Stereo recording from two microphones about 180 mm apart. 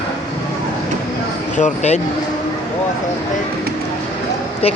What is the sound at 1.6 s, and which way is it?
Speech, 40° left (ahead or behind).